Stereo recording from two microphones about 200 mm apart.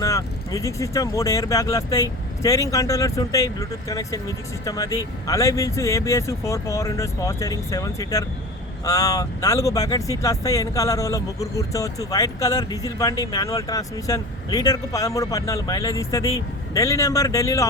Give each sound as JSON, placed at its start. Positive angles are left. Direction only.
{"t": 0.0, "sound": "speech", "side_deg": 15}